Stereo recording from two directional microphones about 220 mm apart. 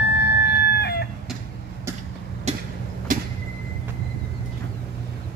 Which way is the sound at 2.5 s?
30° right (ahead or behind).